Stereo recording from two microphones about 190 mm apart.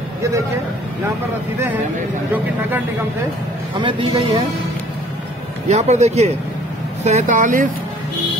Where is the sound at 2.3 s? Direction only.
10° right (ahead or behind).